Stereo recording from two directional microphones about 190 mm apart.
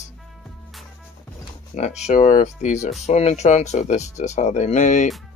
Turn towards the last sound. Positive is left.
turn(degrees=40)  # may be behind; listen again after turning